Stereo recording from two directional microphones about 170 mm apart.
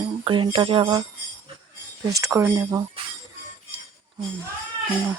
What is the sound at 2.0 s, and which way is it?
Jingle bell, 20° right (ahead or behind).